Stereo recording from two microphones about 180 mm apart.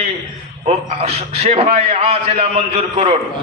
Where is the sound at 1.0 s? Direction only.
35° right (ahead or behind).